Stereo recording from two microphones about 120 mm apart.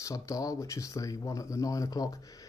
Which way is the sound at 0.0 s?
25° left (ahead or behind).